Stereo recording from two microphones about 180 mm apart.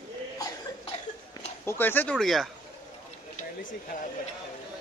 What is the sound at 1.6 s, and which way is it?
Speech, 10° left (ahead or behind).